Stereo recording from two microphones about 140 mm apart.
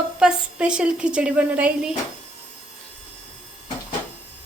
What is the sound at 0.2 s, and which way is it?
A woman's voice, 5° right (ahead or behind).